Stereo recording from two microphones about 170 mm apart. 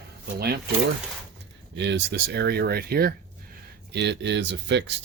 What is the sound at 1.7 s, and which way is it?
Speech, 90° right.